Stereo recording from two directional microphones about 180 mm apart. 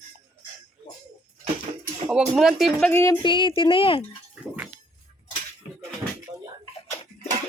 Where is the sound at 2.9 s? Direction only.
15° left (ahead or behind).